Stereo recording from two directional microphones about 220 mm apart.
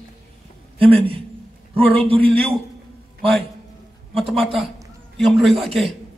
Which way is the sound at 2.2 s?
5° left (ahead or behind).